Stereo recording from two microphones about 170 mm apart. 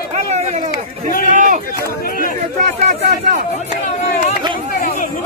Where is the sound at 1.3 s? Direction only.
50° right (ahead or behind).